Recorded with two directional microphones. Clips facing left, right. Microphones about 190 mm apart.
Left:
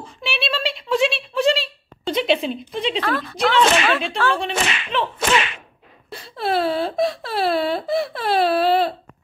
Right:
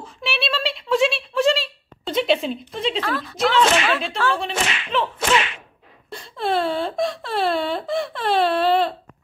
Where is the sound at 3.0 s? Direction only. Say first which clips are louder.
Left 2 dB; 60° left (ahead or behind).